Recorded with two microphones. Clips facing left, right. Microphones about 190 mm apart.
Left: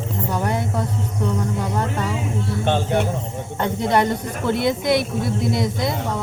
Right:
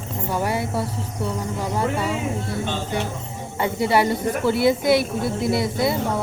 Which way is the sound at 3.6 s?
10° right (ahead or behind).